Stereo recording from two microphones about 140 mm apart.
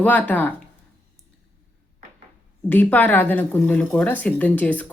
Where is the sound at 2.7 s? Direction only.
15° left (ahead or behind).